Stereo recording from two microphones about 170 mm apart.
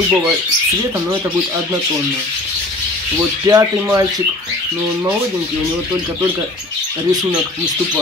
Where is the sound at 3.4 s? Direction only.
20° right (ahead or behind).